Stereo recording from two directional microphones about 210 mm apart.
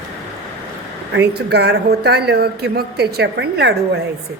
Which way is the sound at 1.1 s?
55° right (ahead or behind).